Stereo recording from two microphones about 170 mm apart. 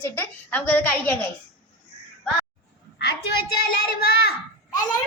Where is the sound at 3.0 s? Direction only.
70° left (ahead or behind).